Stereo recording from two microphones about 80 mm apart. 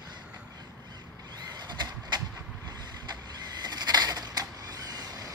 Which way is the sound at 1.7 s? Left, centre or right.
Right.